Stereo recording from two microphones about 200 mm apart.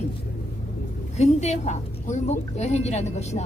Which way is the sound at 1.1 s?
35° left (ahead or behind).